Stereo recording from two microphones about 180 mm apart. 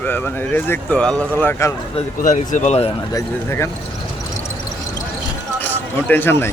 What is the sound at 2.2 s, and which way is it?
Speech, 45° left (ahead or behind).